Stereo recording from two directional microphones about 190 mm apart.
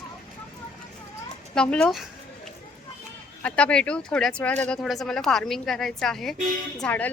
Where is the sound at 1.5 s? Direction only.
5° left (ahead or behind).